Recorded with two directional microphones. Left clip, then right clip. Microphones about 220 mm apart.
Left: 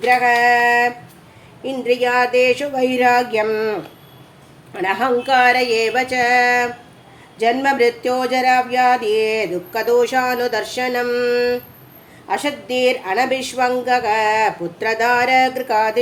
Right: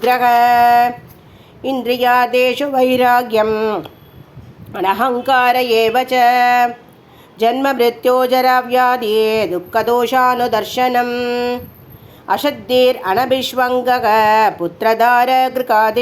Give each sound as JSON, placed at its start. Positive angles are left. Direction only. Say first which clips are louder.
{"t": 0.0, "sound": "speech", "louder": "right 2 dB", "side_deg": -25}
{"t": 1.7, "sound": "speech", "louder": "right 3 dB", "side_deg": -20}
{"t": 4.8, "sound": "speech", "louder": "right 2 dB", "side_deg": -20}